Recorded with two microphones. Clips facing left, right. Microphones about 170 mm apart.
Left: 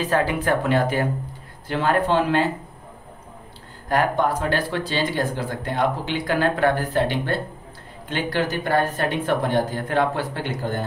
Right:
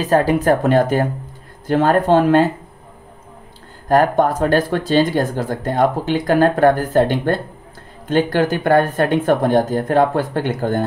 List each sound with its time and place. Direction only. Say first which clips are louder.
0.0 s speech: right 7 dB; 40° right (ahead or behind)
3.9 s speech: right 6 dB; 45° right (ahead or behind)